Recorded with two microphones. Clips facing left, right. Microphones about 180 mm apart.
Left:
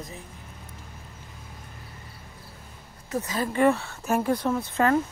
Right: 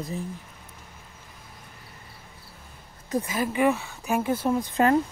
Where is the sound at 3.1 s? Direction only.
10° right (ahead or behind).